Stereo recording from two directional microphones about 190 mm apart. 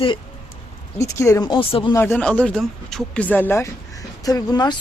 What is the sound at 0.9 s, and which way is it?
Speech, 15° left (ahead or behind).